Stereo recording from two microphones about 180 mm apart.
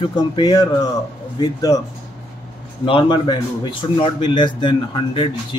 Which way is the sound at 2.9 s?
25° left (ahead or behind).